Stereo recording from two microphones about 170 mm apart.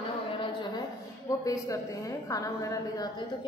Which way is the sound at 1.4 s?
20° left (ahead or behind).